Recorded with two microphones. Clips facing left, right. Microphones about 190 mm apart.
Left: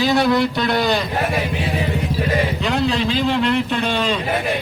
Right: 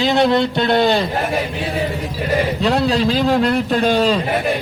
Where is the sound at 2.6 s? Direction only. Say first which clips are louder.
Right 3 dB; 35° right (ahead or behind).